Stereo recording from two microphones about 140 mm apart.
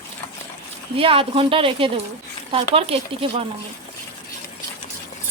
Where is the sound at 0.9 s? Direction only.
40° right (ahead or behind).